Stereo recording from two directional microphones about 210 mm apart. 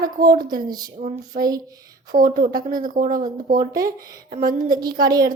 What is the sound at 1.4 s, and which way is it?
Speech, 40° right (ahead or behind).